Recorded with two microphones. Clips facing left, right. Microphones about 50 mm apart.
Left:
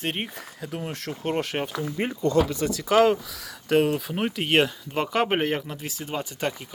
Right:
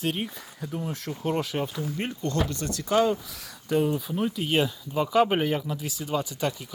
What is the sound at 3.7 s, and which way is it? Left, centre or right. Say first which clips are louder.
Speech: left 3 dB; left.